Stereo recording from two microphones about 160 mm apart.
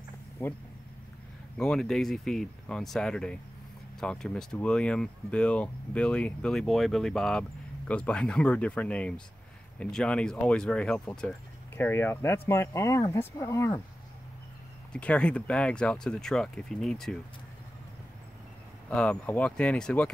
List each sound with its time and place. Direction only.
0.4 s speech: 15° left (ahead or behind)
1.6 s speech: 5° left (ahead or behind)
14.9 s speech: 5° left (ahead or behind)
18.9 s speech: 5° left (ahead or behind)